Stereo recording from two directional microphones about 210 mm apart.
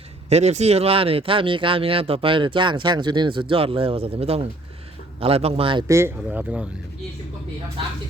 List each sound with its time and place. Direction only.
0.3 s speech: 30° right (ahead or behind)
5.9 s speech: 10° right (ahead or behind)